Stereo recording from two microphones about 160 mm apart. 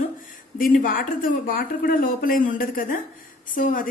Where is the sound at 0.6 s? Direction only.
60° left (ahead or behind).